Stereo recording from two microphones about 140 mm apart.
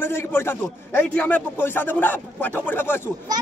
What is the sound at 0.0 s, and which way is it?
A man's voice, 15° left (ahead or behind).